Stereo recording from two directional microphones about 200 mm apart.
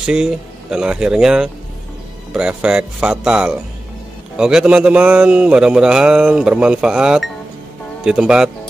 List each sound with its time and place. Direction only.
0.0 s a man's voice: 5° right (ahead or behind)